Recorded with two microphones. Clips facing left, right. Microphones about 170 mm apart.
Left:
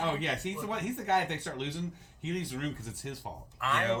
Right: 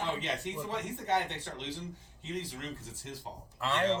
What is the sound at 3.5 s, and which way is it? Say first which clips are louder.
Speech: right 1 dB; 30° right (ahead or behind).